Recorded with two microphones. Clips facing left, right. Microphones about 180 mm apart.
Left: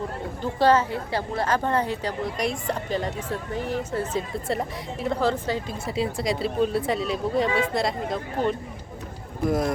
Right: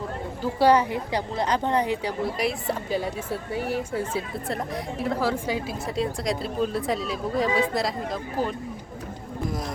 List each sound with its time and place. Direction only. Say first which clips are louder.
0.6 s a woman's voice: right 1 dB; 15° right (ahead or behind)
4.4 s a woman's voice: left 1 dB; centre (ahead or behind)
5.8 s speech: left 2 dB; centre (ahead or behind)
9.5 s speech: left 10 dB; 55° left (ahead or behind)